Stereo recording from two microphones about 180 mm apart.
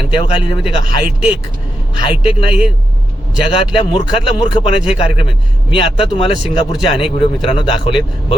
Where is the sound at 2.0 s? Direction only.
30° left (ahead or behind).